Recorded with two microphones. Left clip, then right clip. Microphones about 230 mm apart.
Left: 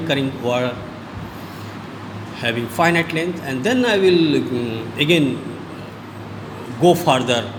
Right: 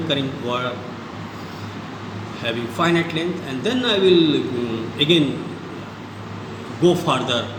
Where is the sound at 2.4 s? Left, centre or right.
Left.